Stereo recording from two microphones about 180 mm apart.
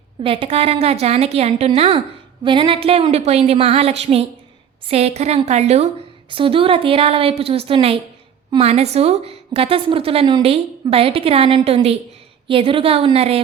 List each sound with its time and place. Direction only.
0.2 s a woman's voice: 30° right (ahead or behind)